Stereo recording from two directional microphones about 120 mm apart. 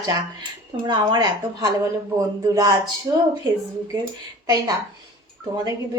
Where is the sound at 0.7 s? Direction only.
40° right (ahead or behind).